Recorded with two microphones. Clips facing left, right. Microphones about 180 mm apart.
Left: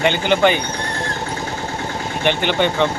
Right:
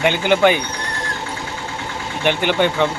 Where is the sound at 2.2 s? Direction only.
10° right (ahead or behind).